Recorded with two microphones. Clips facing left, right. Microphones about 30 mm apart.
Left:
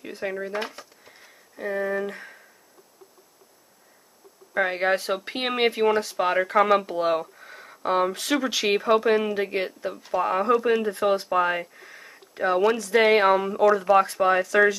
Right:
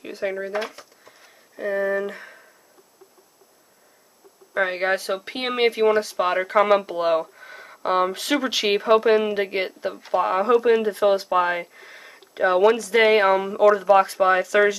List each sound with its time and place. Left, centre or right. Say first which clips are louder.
0.2 s speech: right 3 dB; centre
0.7 s a sound: right 1 dB; centre
1.6 s speech: right 3 dB; centre
4.6 s speech: right 1 dB; centre
12.8 s speech: right 1 dB; centre
14.0 s speech: right 2 dB; centre